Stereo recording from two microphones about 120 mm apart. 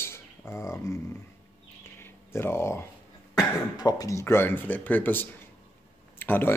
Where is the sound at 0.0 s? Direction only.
20° left (ahead or behind).